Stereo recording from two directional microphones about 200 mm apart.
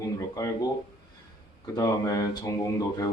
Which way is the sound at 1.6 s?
15° left (ahead or behind).